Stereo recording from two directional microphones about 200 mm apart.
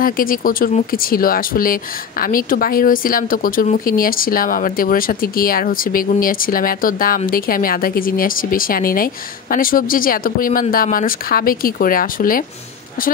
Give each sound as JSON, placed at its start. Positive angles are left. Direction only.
{"t": 0.0, "sound": "speech", "side_deg": 45}